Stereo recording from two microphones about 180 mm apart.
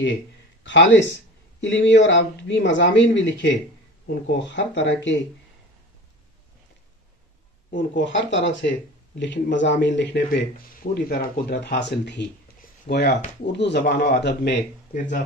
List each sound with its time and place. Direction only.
0.7 s speech: 85° left
7.7 s speech: 90° left
10.8 s speech: 60° left (ahead or behind)